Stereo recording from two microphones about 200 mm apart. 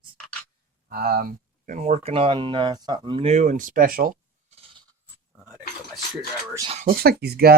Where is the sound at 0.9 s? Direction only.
50° right (ahead or behind).